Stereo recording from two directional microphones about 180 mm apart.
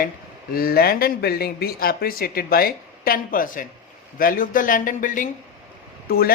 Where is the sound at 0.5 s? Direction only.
55° left (ahead or behind).